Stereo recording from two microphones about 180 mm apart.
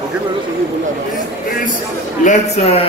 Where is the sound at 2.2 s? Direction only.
40° left (ahead or behind).